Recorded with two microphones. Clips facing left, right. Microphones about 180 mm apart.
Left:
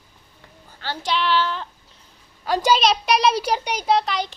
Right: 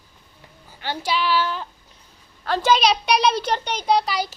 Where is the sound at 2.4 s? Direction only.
10° left (ahead or behind).